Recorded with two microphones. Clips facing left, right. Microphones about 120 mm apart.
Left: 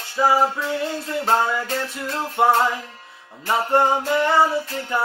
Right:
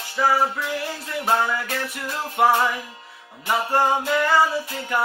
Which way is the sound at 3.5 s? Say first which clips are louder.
Left 2 dB; 25° left (ahead or behind).